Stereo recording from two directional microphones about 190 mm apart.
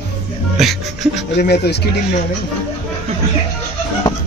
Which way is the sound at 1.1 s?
60° left (ahead or behind).